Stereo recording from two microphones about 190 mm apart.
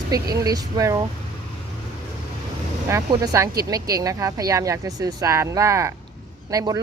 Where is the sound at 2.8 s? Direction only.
15° right (ahead or behind).